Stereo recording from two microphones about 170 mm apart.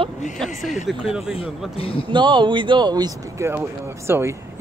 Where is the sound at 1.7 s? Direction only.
35° left (ahead or behind).